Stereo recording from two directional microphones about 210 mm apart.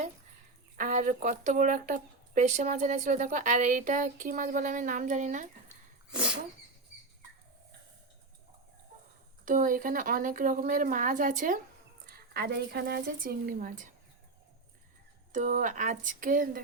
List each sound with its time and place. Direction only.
0.8 s speech: 40° right (ahead or behind)
6.1 s dog: 5° right (ahead or behind)
9.5 s speech: 40° right (ahead or behind)
15.3 s speech: 35° right (ahead or behind)